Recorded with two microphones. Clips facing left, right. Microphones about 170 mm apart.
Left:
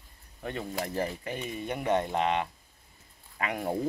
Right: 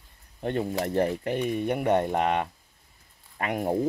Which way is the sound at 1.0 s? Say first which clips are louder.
Right 10 dB; 60° right (ahead or behind).